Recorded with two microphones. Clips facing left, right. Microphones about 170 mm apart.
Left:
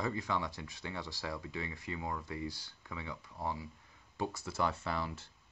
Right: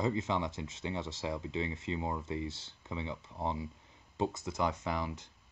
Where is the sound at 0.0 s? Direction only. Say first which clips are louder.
Right 4 dB; 20° right (ahead or behind).